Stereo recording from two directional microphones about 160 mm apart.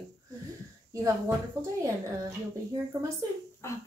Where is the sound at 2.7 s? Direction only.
20° right (ahead or behind).